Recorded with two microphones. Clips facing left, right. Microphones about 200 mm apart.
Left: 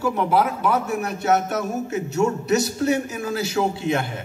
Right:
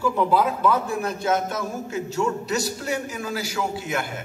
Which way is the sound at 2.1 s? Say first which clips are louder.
Left 5 dB; 20° left (ahead or behind).